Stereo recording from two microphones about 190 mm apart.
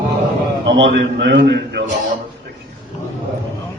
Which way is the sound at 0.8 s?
70° right (ahead or behind).